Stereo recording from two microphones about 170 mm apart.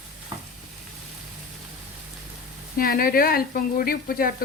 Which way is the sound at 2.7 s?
60° left (ahead or behind).